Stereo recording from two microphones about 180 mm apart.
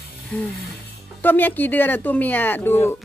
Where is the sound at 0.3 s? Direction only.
10° left (ahead or behind).